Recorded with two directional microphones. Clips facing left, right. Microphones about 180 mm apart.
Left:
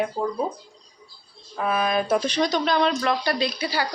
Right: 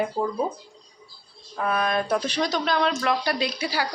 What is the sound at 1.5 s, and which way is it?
Speech, 5° left (ahead or behind).